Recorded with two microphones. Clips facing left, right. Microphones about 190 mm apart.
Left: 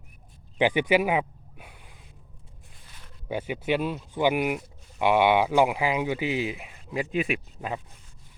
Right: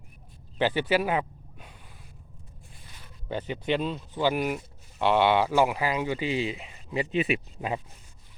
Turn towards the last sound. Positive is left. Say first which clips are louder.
# right 2 dB
turn(degrees=-5)  # may be behind; listen again after turning